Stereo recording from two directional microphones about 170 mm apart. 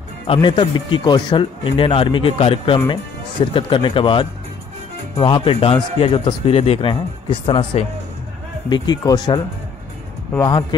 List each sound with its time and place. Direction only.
0.3 s speech: 30° left (ahead or behind)
10.4 s speech: 25° left (ahead or behind)